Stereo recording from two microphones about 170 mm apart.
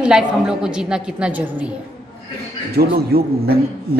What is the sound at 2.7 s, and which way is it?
Speech, 65° right (ahead or behind).